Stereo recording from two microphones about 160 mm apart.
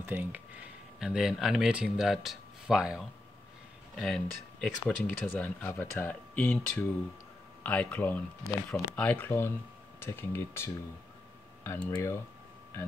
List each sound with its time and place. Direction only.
0.0 s speech: 15° right (ahead or behind); by 12.2 s 20° left (ahead or behind)